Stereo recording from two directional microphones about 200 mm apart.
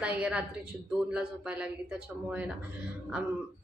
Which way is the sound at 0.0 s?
5° right (ahead or behind).